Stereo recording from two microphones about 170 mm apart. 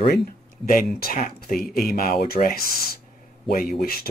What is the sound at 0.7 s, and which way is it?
Speech, 60° left (ahead or behind).